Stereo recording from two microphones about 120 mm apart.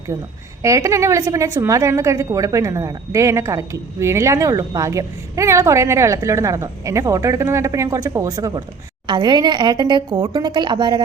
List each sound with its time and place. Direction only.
0.6 s a woman's voice: 25° right (ahead or behind)